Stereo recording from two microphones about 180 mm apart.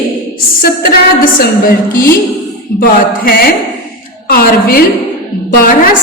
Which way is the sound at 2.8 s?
55° left (ahead or behind).